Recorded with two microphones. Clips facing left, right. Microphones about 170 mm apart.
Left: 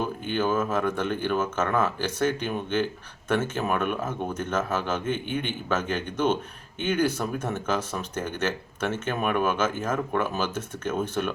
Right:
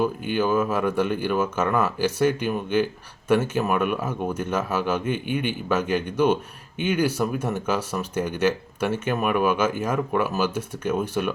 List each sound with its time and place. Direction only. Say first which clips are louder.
0.0 s speech: right 4 dB; 10° right (ahead or behind)